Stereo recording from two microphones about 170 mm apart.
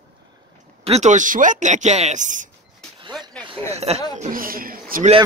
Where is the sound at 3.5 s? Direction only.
40° right (ahead or behind).